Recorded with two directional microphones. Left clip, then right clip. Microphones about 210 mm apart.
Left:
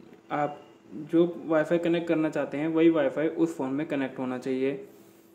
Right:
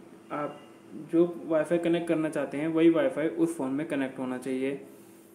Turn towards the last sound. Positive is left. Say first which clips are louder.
# left 3 dB
turn(degrees=10)  # may be behind; listen again after turning